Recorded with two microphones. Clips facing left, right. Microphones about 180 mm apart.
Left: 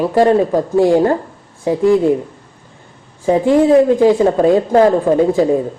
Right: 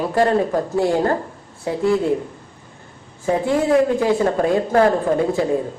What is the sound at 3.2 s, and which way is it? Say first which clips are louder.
Speech: left 7 dB; 25° left (ahead or behind).